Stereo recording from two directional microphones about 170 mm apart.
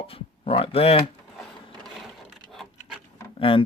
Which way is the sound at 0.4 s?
35° left (ahead or behind).